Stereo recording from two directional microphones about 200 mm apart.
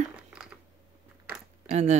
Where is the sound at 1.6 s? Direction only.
35° right (ahead or behind).